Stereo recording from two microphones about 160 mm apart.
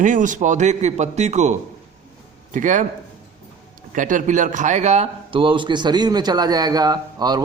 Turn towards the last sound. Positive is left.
turn(degrees=-25)  # may be behind; listen again after turning